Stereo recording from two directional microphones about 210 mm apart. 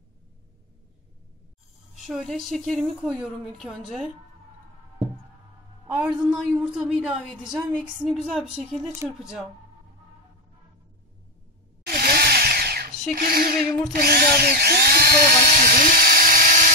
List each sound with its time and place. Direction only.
2.0 s a woman's voice: centre (ahead or behind)
5.9 s a woman's voice: 5° right (ahead or behind)
11.8 s a sound: 45° right (ahead or behind)
13.1 s speech: 45° right (ahead or behind)